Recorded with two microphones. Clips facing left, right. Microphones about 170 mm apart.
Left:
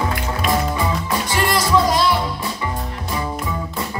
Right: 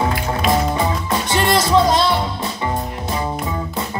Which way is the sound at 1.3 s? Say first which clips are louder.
Right 3 dB; 25° right (ahead or behind).